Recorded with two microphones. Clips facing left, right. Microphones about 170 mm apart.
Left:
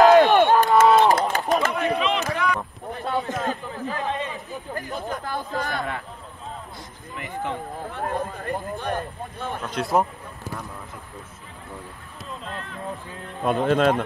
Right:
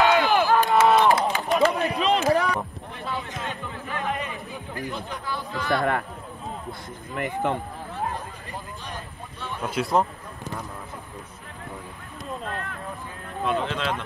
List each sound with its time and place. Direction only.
0.0 s a sound: 40° left (ahead or behind)
2.0 s a sound: 35° right (ahead or behind)
2.9 s a sound: 45° left (ahead or behind)
4.7 s chatter: 45° left (ahead or behind)
5.8 s speech: 55° right (ahead or behind)
7.2 s speech: 55° right (ahead or behind)
7.9 s speech: 60° left (ahead or behind)
9.6 s speech: 5° right (ahead or behind)
12.4 s speech: 55° right (ahead or behind)
13.4 s speech: 40° left (ahead or behind)